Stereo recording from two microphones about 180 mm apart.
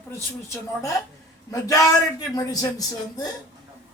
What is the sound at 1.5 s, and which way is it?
A man's voice, 20° left (ahead or behind).